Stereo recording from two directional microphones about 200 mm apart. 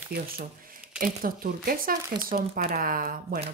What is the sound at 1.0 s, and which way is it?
Speech, 45° right (ahead or behind).